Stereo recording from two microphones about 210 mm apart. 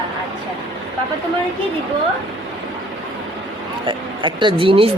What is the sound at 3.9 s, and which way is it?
Speech, 20° right (ahead or behind).